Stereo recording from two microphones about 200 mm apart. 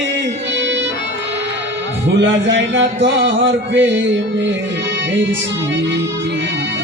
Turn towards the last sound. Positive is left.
turn(degrees=-65)  # may be behind; listen again after turning